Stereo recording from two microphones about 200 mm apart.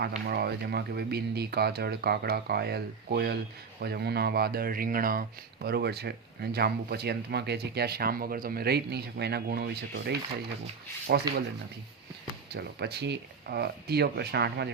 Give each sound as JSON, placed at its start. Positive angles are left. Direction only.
{"t": 0.3, "sound": "speech", "side_deg": -55}
{"t": 11.3, "sound": "speech", "side_deg": -20}
{"t": 12.5, "sound": "speech", "side_deg": -55}